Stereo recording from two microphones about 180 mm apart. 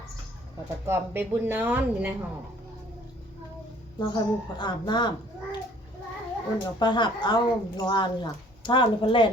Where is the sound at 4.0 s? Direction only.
25° left (ahead or behind).